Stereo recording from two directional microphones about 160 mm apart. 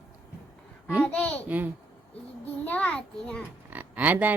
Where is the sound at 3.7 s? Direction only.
10° right (ahead or behind).